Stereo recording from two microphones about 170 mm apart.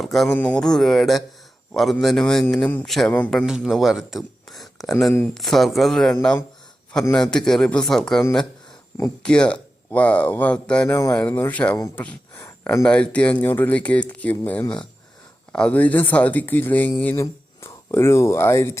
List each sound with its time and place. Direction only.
0.0 s a man's voice: centre (ahead or behind)
9.2 s speech: 5° left (ahead or behind)